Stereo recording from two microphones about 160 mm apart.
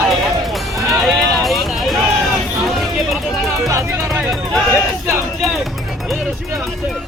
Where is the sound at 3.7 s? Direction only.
20° right (ahead or behind).